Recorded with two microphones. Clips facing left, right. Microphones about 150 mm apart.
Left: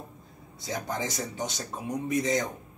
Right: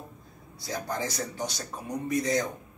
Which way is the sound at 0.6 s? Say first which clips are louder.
Even; 20° left (ahead or behind).